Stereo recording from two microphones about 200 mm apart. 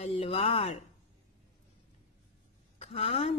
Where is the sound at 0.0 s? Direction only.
30° left (ahead or behind).